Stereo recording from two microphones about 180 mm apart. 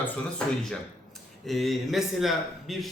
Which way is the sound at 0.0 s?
5° left (ahead or behind).